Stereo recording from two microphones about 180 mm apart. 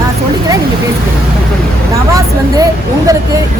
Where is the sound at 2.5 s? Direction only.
20° right (ahead or behind).